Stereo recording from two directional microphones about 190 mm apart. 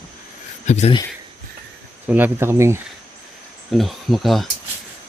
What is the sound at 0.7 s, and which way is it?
Speech, 35° left (ahead or behind).